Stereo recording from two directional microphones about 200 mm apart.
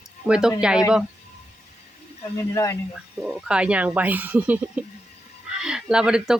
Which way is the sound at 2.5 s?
15° left (ahead or behind).